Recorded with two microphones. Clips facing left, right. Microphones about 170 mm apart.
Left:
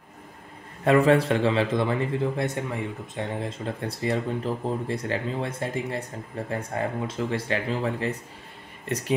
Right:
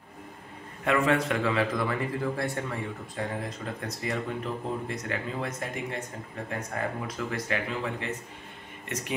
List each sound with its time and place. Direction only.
0.8 s a man's voice: 35° left (ahead or behind)